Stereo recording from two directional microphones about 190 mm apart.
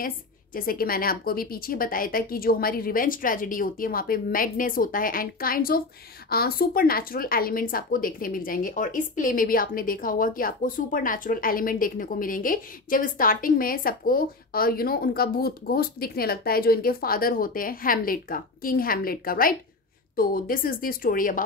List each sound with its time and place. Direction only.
0.0 s a woman's voice: 50° left (ahead or behind)